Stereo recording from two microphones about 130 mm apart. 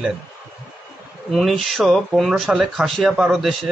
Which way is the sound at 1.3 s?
Centre (ahead or behind).